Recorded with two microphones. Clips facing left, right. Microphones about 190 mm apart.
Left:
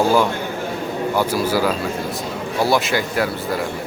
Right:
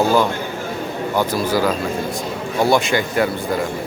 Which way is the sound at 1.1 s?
10° left (ahead or behind).